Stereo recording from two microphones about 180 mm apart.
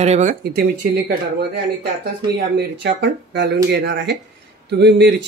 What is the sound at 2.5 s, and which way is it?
Speech, 75° right (ahead or behind).